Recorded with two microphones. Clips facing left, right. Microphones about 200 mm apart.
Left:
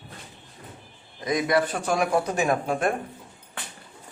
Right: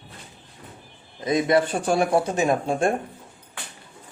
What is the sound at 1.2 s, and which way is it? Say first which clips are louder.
Speech: right 3 dB; 25° right (ahead or behind).